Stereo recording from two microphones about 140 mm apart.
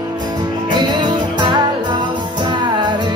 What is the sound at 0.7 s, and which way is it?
Music, 30° right (ahead or behind).